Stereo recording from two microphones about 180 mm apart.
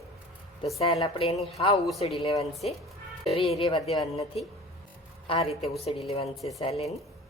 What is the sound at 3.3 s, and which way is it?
Speech, 35° left (ahead or behind).